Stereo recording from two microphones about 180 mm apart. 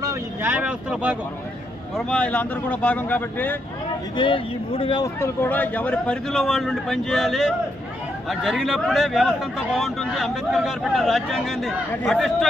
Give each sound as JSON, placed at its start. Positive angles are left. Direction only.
{"t": 0.0, "sound": "speech", "side_deg": -15}
{"t": 2.0, "sound": "speech", "side_deg": 5}
{"t": 4.2, "sound": "speech", "side_deg": 30}
{"t": 5.0, "sound": "speech", "side_deg": 15}